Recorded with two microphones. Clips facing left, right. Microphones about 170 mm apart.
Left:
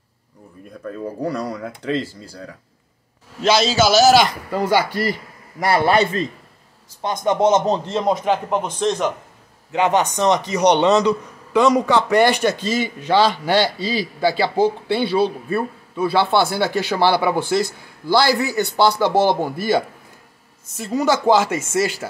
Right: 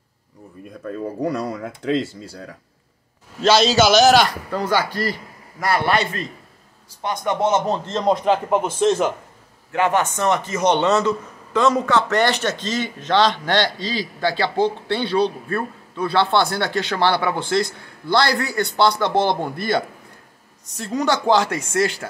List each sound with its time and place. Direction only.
0.8 s speech: centre (ahead or behind)
5.6 s speech: 30° left (ahead or behind); by 8.1 s 15° left (ahead or behind)
8.1 s speech: centre (ahead or behind)
9.7 s speech: 20° left (ahead or behind)